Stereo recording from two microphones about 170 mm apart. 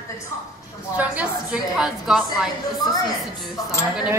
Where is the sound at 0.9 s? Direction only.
5° right (ahead or behind).